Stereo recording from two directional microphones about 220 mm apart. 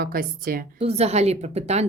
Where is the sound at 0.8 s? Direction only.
30° right (ahead or behind).